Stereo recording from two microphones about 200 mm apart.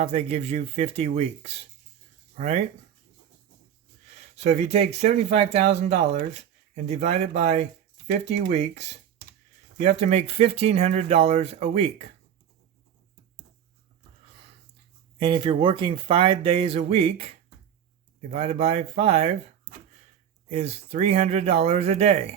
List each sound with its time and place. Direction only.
0.0 s speech: 30° right (ahead or behind)
4.4 s speech: 35° right (ahead or behind)
15.2 s speech: 25° right (ahead or behind)
20.5 s speech: 30° right (ahead or behind)